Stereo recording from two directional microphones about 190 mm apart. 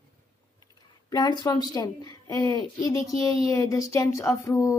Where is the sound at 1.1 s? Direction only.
20° left (ahead or behind).